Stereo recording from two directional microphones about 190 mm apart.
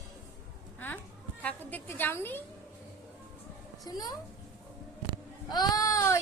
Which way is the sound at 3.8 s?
20° left (ahead or behind).